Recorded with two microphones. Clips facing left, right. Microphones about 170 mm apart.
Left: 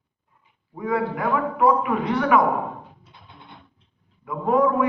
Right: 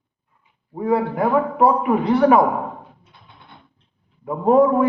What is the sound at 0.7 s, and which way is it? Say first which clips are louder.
A man's voice: right 4 dB; 30° right (ahead or behind).